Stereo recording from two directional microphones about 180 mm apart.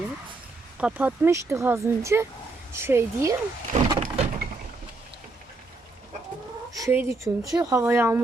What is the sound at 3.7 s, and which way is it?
Power windows, 40° right (ahead or behind).